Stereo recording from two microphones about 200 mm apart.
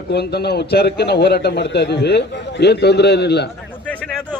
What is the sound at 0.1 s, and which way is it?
A man's voice, 55° left (ahead or behind).